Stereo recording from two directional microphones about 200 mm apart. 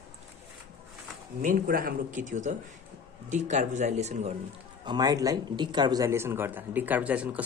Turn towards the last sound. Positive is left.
turn(degrees=-5)  # may be behind; listen again after turning